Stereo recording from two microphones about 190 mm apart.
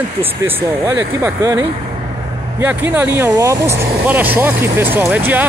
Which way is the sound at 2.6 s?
10° right (ahead or behind).